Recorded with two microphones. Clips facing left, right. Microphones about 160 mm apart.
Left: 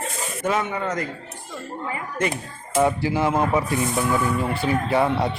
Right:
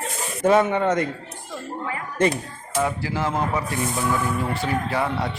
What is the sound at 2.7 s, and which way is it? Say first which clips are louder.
Speech: left 4 dB; 25° left (ahead or behind).